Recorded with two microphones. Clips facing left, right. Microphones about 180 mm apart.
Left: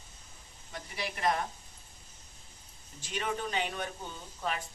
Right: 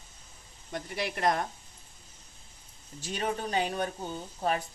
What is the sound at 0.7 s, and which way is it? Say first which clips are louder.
Speech: right 5 dB; 50° right (ahead or behind).